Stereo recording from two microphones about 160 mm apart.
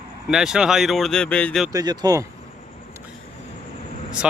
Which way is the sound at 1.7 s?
25° right (ahead or behind).